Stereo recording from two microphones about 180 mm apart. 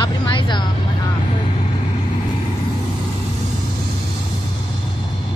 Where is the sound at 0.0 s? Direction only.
25° left (ahead or behind).